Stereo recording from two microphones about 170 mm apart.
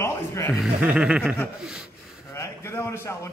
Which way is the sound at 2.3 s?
15° left (ahead or behind).